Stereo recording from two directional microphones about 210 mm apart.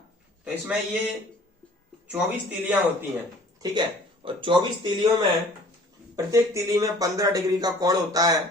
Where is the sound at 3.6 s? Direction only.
25° right (ahead or behind).